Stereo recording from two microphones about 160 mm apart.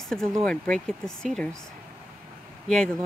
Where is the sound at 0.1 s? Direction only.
5° left (ahead or behind).